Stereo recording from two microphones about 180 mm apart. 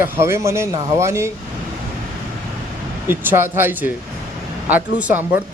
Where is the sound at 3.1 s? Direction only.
10° right (ahead or behind).